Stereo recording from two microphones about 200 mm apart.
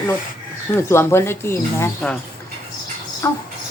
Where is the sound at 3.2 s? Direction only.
15° left (ahead or behind).